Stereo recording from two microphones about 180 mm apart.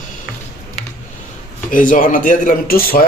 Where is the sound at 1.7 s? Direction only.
50° left (ahead or behind).